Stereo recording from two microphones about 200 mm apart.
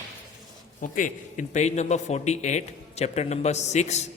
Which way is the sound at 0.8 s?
40° left (ahead or behind).